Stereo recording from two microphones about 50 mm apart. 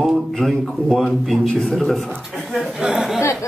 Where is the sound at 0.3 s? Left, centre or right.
Centre.